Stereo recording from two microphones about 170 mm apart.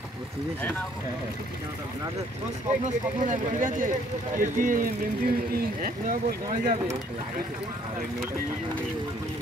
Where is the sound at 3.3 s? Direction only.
50° right (ahead or behind).